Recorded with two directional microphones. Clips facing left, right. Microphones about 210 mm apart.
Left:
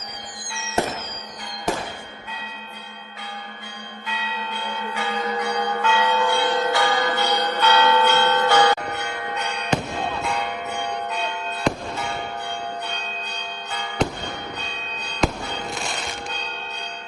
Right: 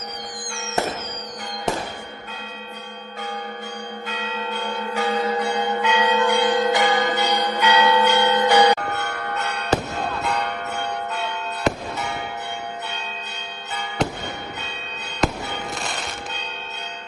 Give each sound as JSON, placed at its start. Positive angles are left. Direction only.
{"t": 4.0, "sound": "church bell", "side_deg": -45}
{"t": 8.8, "sound": "church bell", "side_deg": 20}
{"t": 11.7, "sound": "a sound", "side_deg": -5}
{"t": 15.4, "sound": "fireworks", "side_deg": -20}